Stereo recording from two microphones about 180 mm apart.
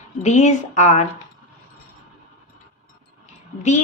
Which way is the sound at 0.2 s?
40° left (ahead or behind).